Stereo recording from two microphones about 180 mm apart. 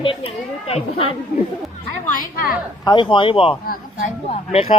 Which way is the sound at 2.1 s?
50° left (ahead or behind).